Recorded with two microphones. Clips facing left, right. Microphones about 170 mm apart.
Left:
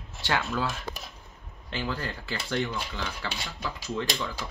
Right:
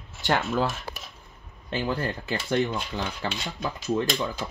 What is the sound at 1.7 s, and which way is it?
Speech, 20° right (ahead or behind).